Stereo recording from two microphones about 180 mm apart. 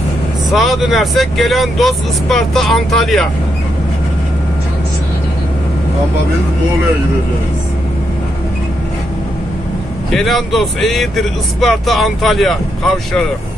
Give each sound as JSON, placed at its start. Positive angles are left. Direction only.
{"t": 0.5, "sound": "speech", "side_deg": 0}
{"t": 10.1, "sound": "speech", "side_deg": 0}